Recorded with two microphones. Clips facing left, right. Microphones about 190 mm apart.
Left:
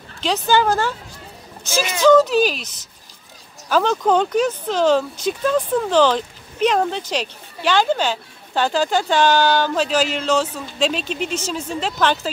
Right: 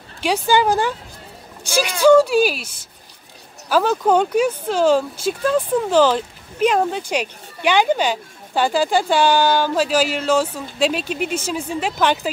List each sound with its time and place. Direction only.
0.2 s speech: 10° right (ahead or behind)